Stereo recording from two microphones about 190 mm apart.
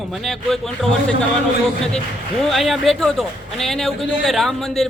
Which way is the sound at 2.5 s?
Centre (ahead or behind).